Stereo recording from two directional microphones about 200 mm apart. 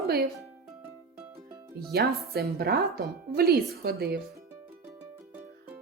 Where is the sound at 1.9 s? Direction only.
50° right (ahead or behind).